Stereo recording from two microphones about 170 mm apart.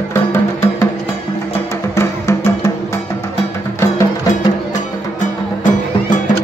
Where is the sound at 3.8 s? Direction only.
20° left (ahead or behind).